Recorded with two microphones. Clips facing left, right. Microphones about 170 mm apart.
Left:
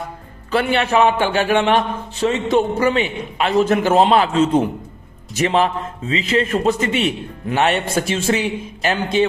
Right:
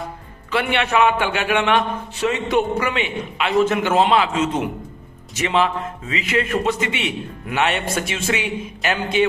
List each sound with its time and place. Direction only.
0.5 s a man's voice: 35° left (ahead or behind)